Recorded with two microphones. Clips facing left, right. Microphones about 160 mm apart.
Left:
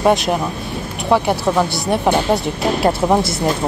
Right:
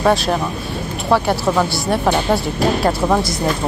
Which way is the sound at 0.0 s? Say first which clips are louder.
Left 1 dB; 20° left (ahead or behind).